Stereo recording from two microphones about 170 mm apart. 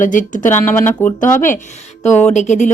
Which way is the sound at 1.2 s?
50° left (ahead or behind).